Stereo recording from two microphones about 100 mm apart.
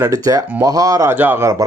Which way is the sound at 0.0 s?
35° right (ahead or behind).